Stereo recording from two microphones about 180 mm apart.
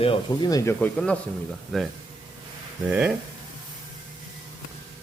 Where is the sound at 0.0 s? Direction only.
25° left (ahead or behind); by 3.1 s 10° right (ahead or behind).